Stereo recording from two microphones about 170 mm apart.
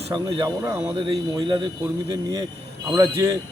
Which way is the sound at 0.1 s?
25° right (ahead or behind).